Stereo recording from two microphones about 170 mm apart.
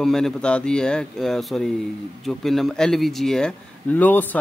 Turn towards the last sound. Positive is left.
turn(degrees=10)  # may be behind; listen again after turning